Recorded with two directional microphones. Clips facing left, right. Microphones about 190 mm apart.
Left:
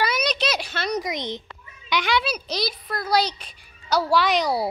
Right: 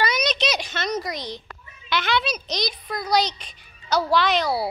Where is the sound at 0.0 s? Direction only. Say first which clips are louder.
Even; 5° left (ahead or behind).